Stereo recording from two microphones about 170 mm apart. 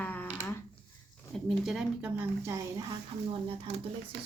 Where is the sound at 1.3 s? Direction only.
Centre (ahead or behind).